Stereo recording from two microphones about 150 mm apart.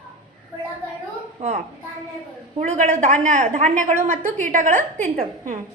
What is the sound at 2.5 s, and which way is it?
A woman's voice, 55° right (ahead or behind).